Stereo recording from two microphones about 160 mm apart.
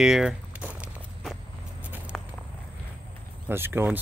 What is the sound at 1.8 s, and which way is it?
Walk, 10° right (ahead or behind).